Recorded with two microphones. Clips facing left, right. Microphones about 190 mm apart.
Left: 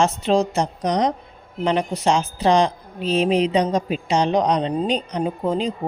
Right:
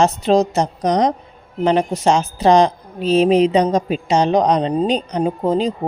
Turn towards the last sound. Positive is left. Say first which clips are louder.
# right 4 dB
turn(degrees=-40)  # may be behind; listen again after turning